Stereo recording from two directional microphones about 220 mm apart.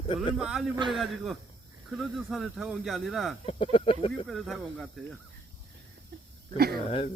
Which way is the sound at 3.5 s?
25° left (ahead or behind).